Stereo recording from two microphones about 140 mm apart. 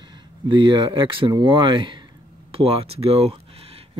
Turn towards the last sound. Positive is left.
turn(degrees=-45)  # may be behind; listen again after turning